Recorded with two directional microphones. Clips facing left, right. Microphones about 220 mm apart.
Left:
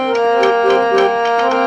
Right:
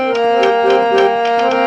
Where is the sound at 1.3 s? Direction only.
25° right (ahead or behind).